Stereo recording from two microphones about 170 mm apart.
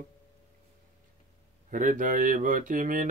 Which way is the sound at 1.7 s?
50° right (ahead or behind).